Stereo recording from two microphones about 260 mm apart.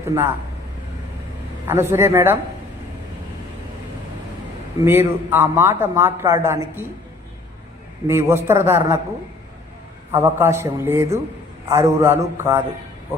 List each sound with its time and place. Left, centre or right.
0.0 s speech: centre
1.6 s a man's voice: centre
4.9 s a man's voice: centre
8.0 s a man's voice: centre
10.1 s a man's voice: centre